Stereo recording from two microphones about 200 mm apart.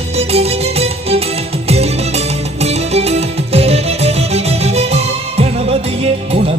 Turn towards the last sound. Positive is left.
turn(degrees=-30)  # may be behind; listen again after turning